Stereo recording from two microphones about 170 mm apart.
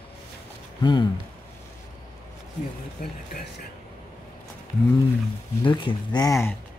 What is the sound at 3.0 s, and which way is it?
Speech, 60° left (ahead or behind).